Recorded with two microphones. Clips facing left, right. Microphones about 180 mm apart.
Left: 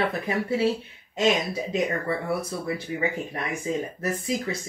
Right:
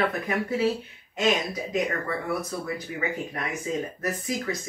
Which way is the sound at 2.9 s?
25° left (ahead or behind).